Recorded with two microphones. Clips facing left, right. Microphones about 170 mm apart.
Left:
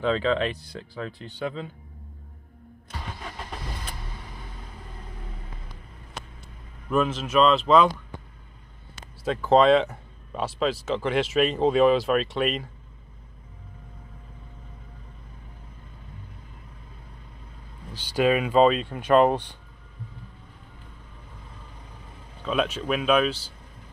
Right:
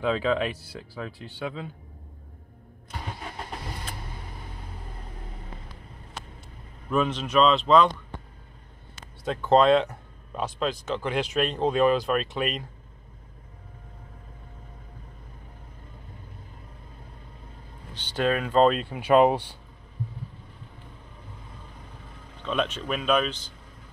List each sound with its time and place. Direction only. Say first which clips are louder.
0.0 s speech: left 1 dB; 5° right (ahead or behind)
6.9 s speech: left 1 dB; centre (ahead or behind)
9.2 s speech: left 1 dB; centre (ahead or behind)
17.9 s speech: left 4 dB; 10° left (ahead or behind); by 19.5 s 10° right (ahead or behind)
22.4 s speech: left 2 dB; 5° left (ahead or behind)